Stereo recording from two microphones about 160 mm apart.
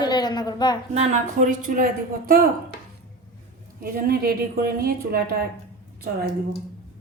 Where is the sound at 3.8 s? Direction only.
65° right (ahead or behind).